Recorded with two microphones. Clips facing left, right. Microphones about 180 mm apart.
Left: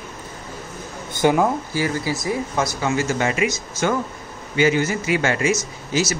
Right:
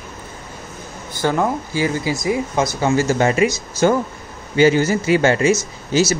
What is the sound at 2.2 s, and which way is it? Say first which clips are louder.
Speech: right 5 dB; 20° right (ahead or behind).